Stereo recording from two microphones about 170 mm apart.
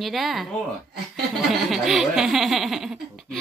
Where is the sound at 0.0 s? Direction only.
Centre (ahead or behind).